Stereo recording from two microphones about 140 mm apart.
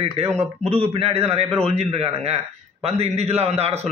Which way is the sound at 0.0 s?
50° right (ahead or behind).